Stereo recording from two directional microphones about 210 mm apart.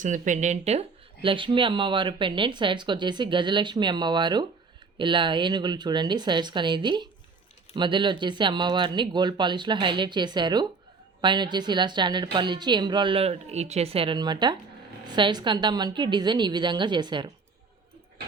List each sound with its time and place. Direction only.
0.0 s speech: 35° right (ahead or behind); by 17.3 s 20° right (ahead or behind)